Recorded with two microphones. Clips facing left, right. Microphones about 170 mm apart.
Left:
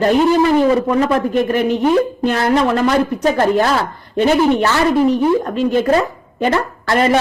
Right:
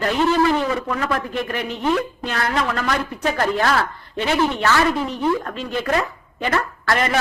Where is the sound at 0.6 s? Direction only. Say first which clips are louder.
Left 9 dB; 35° left (ahead or behind).